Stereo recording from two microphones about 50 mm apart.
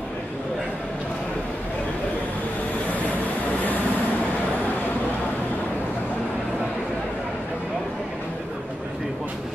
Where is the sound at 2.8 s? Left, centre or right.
Left.